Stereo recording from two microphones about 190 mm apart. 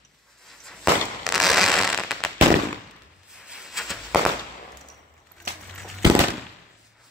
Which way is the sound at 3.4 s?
5° right (ahead or behind).